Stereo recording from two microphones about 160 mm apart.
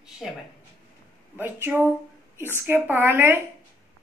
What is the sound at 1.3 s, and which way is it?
A woman's voice, 15° right (ahead or behind).